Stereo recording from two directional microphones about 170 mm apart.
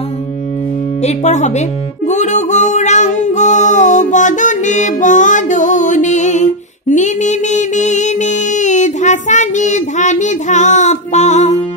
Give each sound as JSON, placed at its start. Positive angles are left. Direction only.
{"t": 1.0, "sound": "speech", "side_deg": 45}
{"t": 2.0, "sound": "music", "side_deg": 45}